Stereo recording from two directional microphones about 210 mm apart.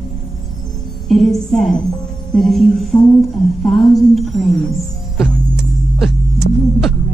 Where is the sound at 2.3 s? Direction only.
Centre (ahead or behind).